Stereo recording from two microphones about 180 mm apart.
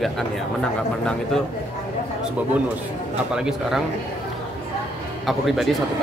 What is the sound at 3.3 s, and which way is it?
Speech, 5° right (ahead or behind).